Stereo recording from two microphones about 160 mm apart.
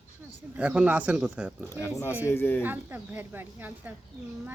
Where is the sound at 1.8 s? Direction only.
15° left (ahead or behind).